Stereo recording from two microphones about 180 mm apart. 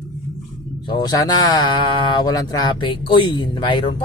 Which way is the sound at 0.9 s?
20° left (ahead or behind).